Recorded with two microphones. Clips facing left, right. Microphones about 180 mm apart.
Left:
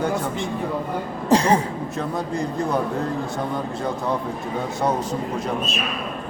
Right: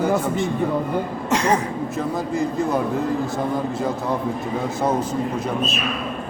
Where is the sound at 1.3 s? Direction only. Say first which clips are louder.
Left 3 dB; 30° left (ahead or behind).